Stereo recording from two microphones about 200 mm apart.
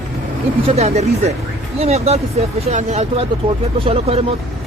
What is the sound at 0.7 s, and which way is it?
Speech, 30° right (ahead or behind).